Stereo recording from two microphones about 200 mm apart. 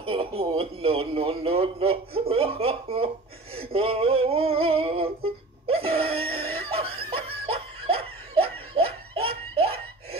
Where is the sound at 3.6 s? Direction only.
30° right (ahead or behind).